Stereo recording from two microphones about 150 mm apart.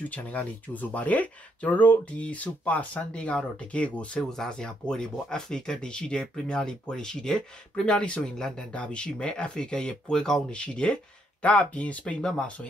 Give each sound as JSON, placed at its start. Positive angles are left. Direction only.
{"t": 0.1, "sound": "speech", "side_deg": 10}